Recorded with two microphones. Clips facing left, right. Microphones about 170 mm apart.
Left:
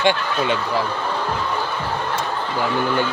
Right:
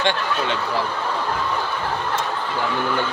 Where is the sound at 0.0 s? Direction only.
10° left (ahead or behind).